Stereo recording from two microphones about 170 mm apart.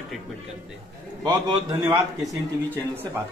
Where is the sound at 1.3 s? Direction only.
25° right (ahead or behind).